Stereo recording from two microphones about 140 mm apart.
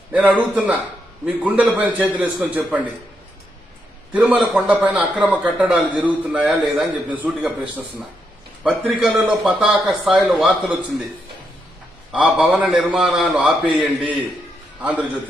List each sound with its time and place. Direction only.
0.1 s a man's voice: 10° right (ahead or behind)
4.1 s a man's voice: 10° right (ahead or behind)
8.6 s a man's voice: 5° right (ahead or behind)
12.1 s a man's voice: 10° right (ahead or behind)